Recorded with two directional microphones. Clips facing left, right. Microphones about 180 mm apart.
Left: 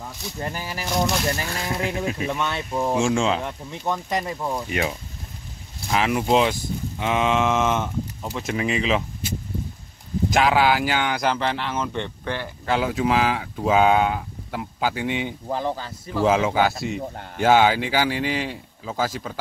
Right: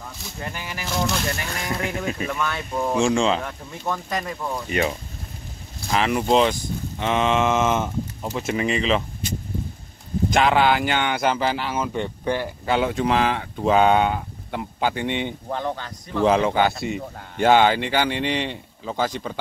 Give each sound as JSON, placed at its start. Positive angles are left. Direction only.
{"t": 0.4, "sound": "speech", "side_deg": 35}
{"t": 1.7, "sound": "speech", "side_deg": 0}
{"t": 2.3, "sound": "speech", "side_deg": 25}
{"t": 2.7, "sound": "speech", "side_deg": 15}
{"t": 3.4, "sound": "speech", "side_deg": 20}
{"t": 4.6, "sound": "speech", "side_deg": 5}
{"t": 10.3, "sound": "speech", "side_deg": 5}
{"t": 12.6, "sound": "speech", "side_deg": 0}